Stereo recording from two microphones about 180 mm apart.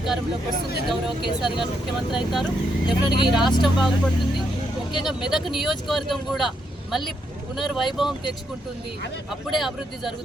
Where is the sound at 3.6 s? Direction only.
Centre (ahead or behind).